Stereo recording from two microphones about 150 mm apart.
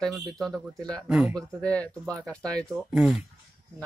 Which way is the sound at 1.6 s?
10° left (ahead or behind).